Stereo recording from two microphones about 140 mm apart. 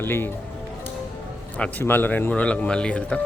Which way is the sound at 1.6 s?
15° left (ahead or behind).